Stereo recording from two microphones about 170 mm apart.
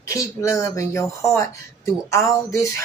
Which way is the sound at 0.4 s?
15° left (ahead or behind).